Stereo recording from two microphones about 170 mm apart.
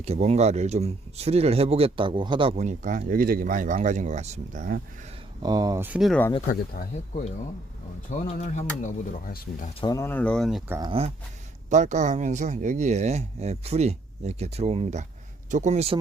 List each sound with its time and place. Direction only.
0.0 s speech: 40° right (ahead or behind)
5.4 s speech: 25° right (ahead or behind)
5.8 s speech: 10° right (ahead or behind)
6.1 s speech: 10° left (ahead or behind)
8.1 s speech: 45° left (ahead or behind)
9.8 s speech: 20° left (ahead or behind); by 10.6 s 5° left (ahead or behind)
10.7 s speech: 20° right (ahead or behind)
11.7 s speech: 45° right (ahead or behind)